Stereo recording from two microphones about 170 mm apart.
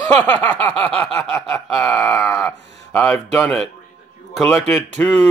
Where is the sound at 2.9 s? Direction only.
5° left (ahead or behind).